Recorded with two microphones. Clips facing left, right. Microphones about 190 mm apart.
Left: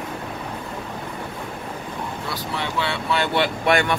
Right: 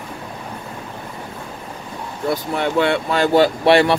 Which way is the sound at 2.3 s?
50° right (ahead or behind).